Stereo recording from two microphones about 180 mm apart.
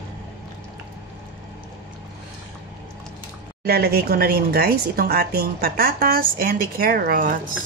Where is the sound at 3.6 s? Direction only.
60° right (ahead or behind).